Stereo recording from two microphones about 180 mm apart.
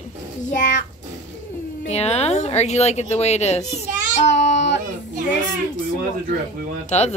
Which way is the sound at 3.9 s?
45° right (ahead or behind).